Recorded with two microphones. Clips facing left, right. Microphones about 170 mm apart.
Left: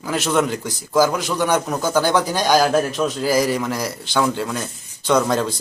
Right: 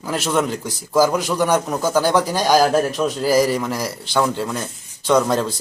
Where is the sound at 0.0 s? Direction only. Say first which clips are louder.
Left 1 dB; 5° right (ahead or behind).